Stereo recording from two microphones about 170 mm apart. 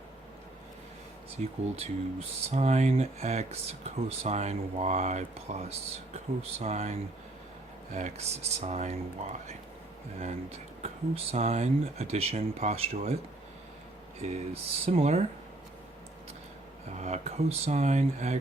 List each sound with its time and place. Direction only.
1.4 s speech: 40° right (ahead or behind)
7.9 s speech: 40° right (ahead or behind)
10.8 s speech: 35° right (ahead or behind)
14.2 s speech: 40° right (ahead or behind)
17.0 s speech: 40° right (ahead or behind)